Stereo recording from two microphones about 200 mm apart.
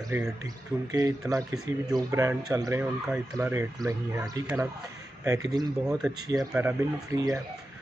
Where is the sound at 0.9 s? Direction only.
15° right (ahead or behind).